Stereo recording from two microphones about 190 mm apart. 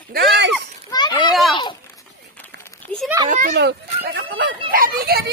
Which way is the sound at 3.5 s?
60° right (ahead or behind).